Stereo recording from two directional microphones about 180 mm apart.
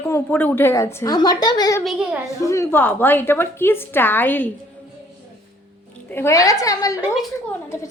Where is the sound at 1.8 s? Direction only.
Centre (ahead or behind).